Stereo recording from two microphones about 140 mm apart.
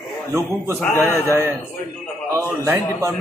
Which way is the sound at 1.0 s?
20° right (ahead or behind).